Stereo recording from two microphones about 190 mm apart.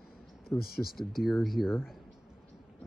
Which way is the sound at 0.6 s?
55° left (ahead or behind).